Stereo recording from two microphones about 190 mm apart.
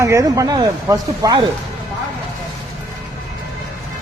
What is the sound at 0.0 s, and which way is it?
Speech, 15° right (ahead or behind).